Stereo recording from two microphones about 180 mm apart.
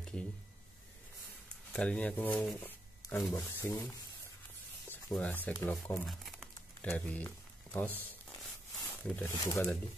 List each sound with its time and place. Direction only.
1.7 s speech: 5° left (ahead or behind)
5.0 s speech: 5° left (ahead or behind)
6.0 s crumpling: centre (ahead or behind)
8.0 s zipper: 15° left (ahead or behind)
9.4 s speech: 20° left (ahead or behind)